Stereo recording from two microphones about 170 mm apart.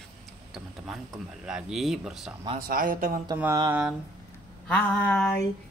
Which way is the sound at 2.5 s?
60° right (ahead or behind).